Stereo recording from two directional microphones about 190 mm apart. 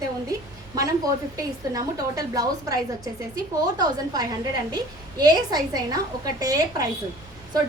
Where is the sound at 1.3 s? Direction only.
20° right (ahead or behind).